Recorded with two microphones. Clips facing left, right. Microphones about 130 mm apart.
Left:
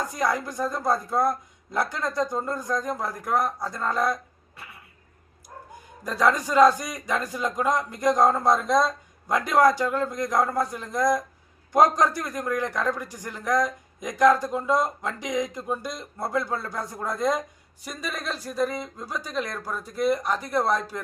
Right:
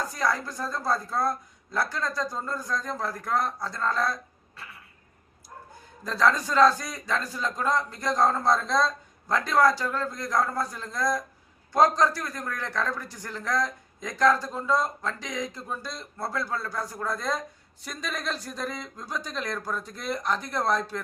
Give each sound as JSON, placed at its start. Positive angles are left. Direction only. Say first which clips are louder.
{"t": 0.0, "sound": "a man's voice", "louder": "left 2 dB", "side_deg": 20}
{"t": 6.1, "sound": "a man's voice", "louder": "left 1 dB", "side_deg": 15}
{"t": 17.8, "sound": "a man's voice", "louder": "left 1 dB", "side_deg": 5}